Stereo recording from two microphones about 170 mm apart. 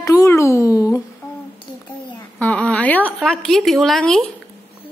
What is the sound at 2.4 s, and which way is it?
A woman's voice, 10° left (ahead or behind).